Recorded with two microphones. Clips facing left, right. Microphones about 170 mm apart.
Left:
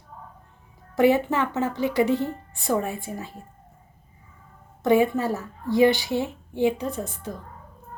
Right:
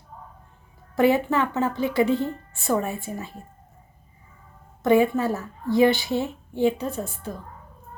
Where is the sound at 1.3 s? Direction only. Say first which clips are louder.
Right 1 dB; 20° left (ahead or behind).